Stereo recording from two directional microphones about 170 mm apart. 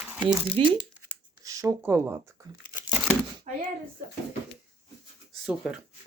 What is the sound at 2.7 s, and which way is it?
Crumpling, 15° right (ahead or behind).